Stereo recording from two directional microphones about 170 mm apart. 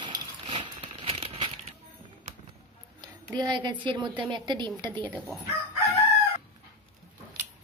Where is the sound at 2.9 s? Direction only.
25° right (ahead or behind).